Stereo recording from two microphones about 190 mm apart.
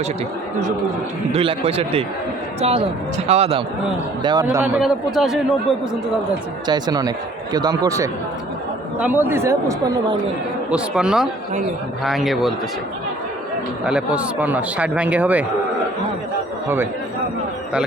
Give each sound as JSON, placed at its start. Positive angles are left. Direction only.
{"t": 1.3, "sound": "a man's voice", "side_deg": -30}
{"t": 4.4, "sound": "a man's voice", "side_deg": -10}
{"t": 6.7, "sound": "a man's voice", "side_deg": -20}
{"t": 10.7, "sound": "a man's voice", "side_deg": -5}
{"t": 13.8, "sound": "speech", "side_deg": -5}
{"t": 16.6, "sound": "speech", "side_deg": -15}